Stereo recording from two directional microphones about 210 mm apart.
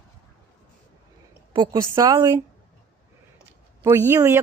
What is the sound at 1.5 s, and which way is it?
Speech, 20° right (ahead or behind).